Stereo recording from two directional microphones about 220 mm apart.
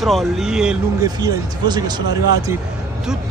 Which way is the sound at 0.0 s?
Centre (ahead or behind).